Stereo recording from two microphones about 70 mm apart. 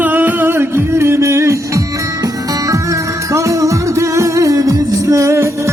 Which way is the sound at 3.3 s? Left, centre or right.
Right.